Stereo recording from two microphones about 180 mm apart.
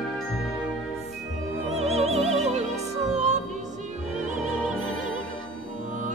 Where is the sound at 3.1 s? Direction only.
40° right (ahead or behind).